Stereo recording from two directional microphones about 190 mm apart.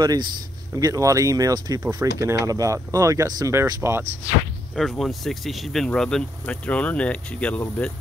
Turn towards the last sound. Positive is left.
turn(degrees=5)  # may be behind; listen again after turning